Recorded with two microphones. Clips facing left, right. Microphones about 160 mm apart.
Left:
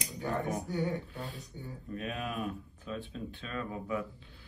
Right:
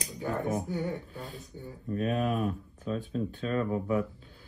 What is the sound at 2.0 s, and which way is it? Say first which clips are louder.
Speech: right 8 dB; 40° right (ahead or behind).